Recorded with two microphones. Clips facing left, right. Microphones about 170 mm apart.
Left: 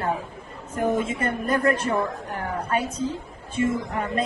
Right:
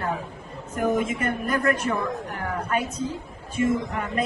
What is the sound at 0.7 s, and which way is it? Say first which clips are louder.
A woman's voice: even; 30° left (ahead or behind).